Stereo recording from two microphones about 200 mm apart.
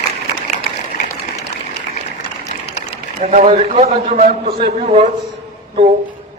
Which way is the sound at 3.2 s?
40° right (ahead or behind).